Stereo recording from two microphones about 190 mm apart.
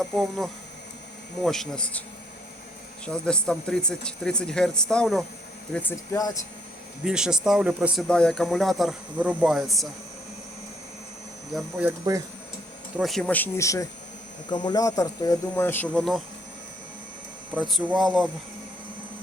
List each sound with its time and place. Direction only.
0.2 s speech: centre (ahead or behind)
3.1 s speech: 5° left (ahead or behind)
7.0 s speech: 5° right (ahead or behind)
11.5 s speech: 5° right (ahead or behind)
13.0 s speech: centre (ahead or behind)
17.5 s speech: 5° right (ahead or behind)